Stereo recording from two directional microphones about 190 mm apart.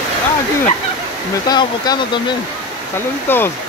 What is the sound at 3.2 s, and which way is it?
Speech, 10° left (ahead or behind).